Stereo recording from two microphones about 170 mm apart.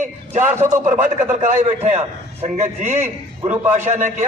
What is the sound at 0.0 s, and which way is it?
A man's voice, 45° right (ahead or behind).